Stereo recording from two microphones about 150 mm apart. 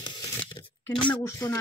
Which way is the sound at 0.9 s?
5° left (ahead or behind).